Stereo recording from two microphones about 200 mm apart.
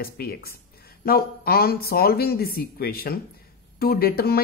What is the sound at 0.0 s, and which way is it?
A woman's voice, 50° left (ahead or behind).